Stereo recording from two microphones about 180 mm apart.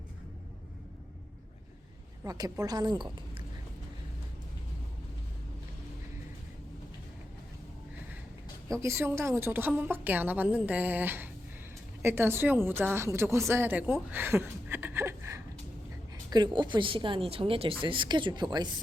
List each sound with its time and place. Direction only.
2.2 s a woman's voice: 20° right (ahead or behind)
8.7 s a woman's voice: 15° right (ahead or behind)